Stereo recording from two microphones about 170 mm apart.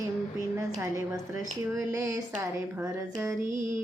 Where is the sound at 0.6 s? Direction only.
15° right (ahead or behind).